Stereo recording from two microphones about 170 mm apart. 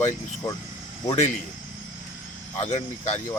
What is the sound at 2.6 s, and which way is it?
Speech, 40° left (ahead or behind).